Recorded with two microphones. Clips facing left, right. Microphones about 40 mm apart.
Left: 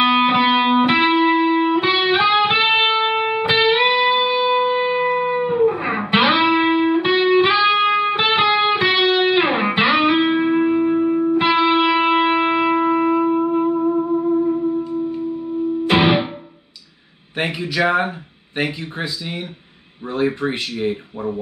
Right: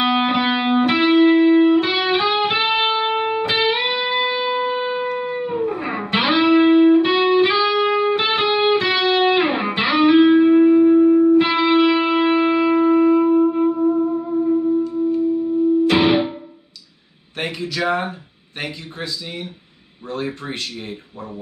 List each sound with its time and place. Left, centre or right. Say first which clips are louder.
0.0 s music: left 3 dB; centre
3.8 s music: left 4 dB; centre
17.4 s speech: left 4 dB; centre